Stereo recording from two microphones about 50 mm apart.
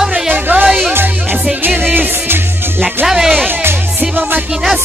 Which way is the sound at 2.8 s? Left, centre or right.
Centre.